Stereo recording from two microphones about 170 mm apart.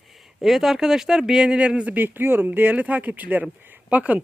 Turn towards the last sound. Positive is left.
turn(degrees=-10)  # may be behind; listen again after turning